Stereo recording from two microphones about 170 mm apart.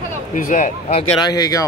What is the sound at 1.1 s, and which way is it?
Speech, 25° left (ahead or behind).